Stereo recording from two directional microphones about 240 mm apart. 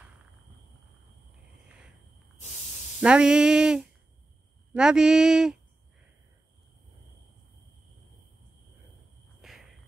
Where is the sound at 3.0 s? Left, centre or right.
Centre.